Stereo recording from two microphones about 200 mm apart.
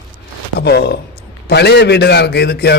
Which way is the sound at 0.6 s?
55° left (ahead or behind).